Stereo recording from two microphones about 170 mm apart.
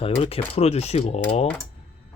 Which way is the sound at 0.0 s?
35° left (ahead or behind).